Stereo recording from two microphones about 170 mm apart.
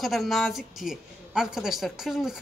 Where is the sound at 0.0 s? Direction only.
Centre (ahead or behind).